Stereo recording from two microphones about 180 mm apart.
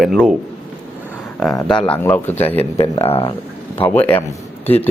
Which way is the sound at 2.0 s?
10° left (ahead or behind).